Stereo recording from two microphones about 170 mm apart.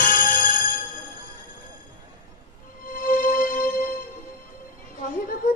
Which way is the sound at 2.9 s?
55° left (ahead or behind).